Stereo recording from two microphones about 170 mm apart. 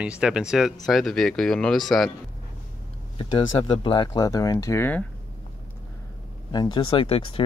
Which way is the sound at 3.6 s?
30° left (ahead or behind).